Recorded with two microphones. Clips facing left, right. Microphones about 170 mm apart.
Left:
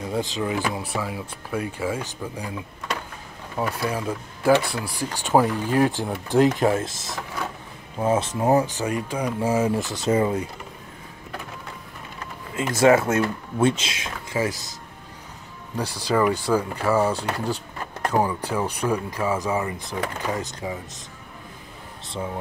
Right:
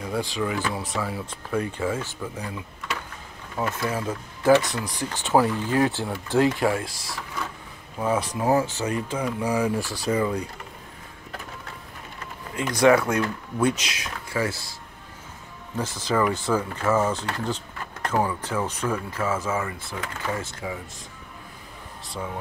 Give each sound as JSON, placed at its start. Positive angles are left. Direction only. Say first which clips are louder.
{"t": 0.0, "sound": "speech", "louder": "left 1 dB", "side_deg": 20}
{"t": 3.5, "sound": "speech", "louder": "left 1 dB", "side_deg": 10}
{"t": 12.8, "sound": "speech", "louder": "left 1 dB", "side_deg": 25}
{"t": 15.8, "sound": "speech", "louder": "left 2 dB", "side_deg": 10}